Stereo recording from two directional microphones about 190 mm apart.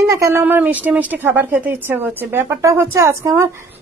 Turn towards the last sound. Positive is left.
turn(degrees=-15)  # may be behind; listen again after turning